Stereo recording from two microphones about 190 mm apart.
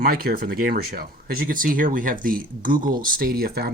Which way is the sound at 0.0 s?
55° right (ahead or behind).